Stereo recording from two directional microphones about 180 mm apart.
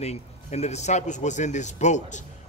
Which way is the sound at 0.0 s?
35° left (ahead or behind).